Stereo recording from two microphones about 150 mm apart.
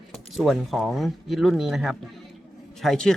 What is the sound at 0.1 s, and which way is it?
Speech, centre (ahead or behind).